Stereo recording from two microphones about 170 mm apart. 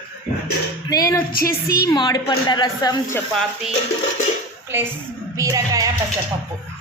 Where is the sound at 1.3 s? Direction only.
60° left (ahead or behind).